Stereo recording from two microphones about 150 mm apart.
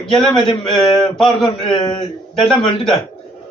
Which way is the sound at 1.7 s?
25° left (ahead or behind).